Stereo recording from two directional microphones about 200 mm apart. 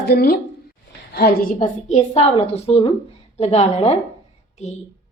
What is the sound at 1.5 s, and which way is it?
A woman's voice, 35° left (ahead or behind).